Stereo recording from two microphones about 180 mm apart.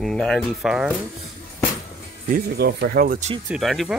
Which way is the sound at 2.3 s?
60° right (ahead or behind).